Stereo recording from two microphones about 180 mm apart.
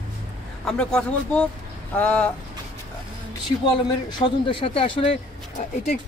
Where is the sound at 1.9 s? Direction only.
5° left (ahead or behind).